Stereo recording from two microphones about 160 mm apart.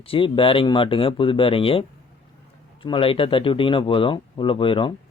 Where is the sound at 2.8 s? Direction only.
35° left (ahead or behind).